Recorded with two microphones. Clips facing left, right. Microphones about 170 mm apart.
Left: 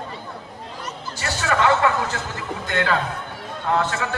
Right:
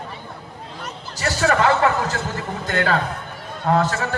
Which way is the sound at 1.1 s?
35° right (ahead or behind).